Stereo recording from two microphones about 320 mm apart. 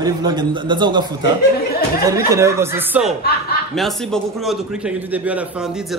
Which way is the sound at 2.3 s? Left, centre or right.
Centre.